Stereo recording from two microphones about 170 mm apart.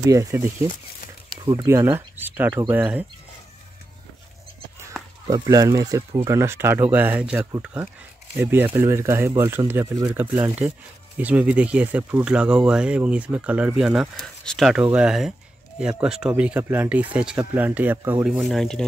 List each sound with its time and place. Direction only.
0.0 s speech: 20° right (ahead or behind)
1.4 s speech: 30° right (ahead or behind)
1.7 s speech: 15° right (ahead or behind)
4.9 s a sound: centre (ahead or behind)
5.3 s speech: 20° right (ahead or behind); by 18.9 s 5° left (ahead or behind)